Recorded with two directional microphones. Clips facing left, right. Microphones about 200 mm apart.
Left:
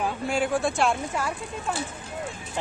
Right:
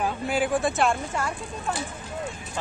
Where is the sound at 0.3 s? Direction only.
Centre (ahead or behind).